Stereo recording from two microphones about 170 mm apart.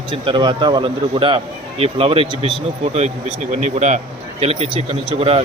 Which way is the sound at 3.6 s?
45° right (ahead or behind).